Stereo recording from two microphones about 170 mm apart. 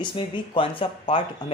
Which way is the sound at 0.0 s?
30° left (ahead or behind).